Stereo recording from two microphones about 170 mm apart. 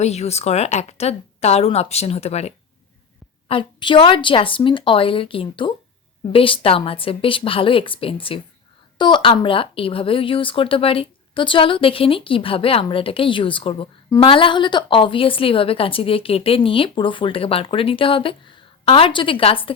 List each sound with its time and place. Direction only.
0.0 s a woman's voice: 40° left (ahead or behind)
3.5 s a woman's voice: 30° left (ahead or behind)